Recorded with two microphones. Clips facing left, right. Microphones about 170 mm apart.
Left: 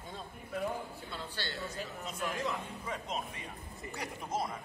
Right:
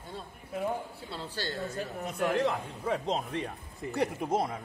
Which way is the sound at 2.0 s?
60° right (ahead or behind).